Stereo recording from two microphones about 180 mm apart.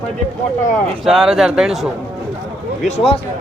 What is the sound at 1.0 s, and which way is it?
Speech, centre (ahead or behind).